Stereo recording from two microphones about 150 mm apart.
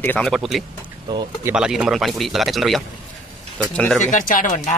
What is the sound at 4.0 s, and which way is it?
Speech, 60° left (ahead or behind).